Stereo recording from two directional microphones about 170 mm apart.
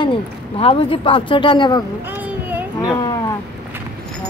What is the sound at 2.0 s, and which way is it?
Child singing, 10° right (ahead or behind).